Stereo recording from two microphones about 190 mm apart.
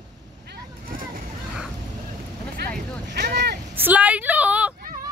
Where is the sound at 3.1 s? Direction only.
60° right (ahead or behind).